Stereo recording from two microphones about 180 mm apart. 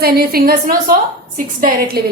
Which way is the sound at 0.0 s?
55° right (ahead or behind).